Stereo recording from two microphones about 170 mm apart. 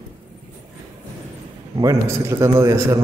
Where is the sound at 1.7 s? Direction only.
20° right (ahead or behind).